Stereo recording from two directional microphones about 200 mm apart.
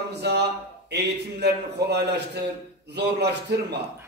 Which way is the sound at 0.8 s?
55° right (ahead or behind).